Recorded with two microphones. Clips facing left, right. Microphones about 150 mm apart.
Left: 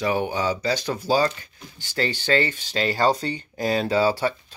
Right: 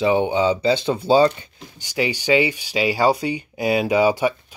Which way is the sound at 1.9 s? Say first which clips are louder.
Right 4 dB; 15° right (ahead or behind).